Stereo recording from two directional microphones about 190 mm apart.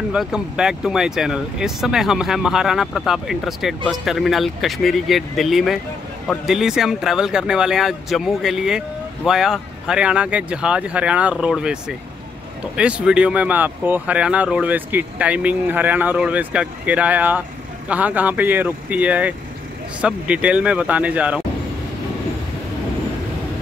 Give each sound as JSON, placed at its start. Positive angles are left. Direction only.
{"t": 0.1, "sound": "speech", "side_deg": -5}